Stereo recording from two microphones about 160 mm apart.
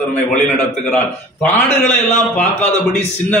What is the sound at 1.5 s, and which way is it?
Speech, 45° left (ahead or behind).